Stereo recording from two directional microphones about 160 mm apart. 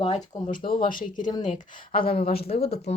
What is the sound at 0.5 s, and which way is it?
Speech, 65° left (ahead or behind).